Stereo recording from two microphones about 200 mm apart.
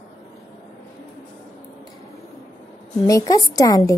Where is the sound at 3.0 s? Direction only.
20° left (ahead or behind).